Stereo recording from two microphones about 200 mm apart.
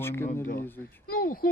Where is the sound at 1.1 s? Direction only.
45° left (ahead or behind).